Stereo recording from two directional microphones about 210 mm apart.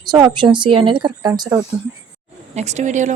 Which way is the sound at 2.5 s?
35° right (ahead or behind).